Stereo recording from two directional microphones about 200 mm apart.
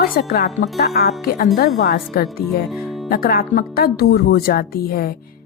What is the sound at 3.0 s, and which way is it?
Speech, 50° left (ahead or behind).